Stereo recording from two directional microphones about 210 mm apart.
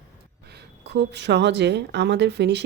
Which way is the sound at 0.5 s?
55° right (ahead or behind).